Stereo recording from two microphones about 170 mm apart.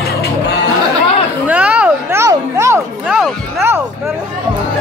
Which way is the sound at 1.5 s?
5° right (ahead or behind).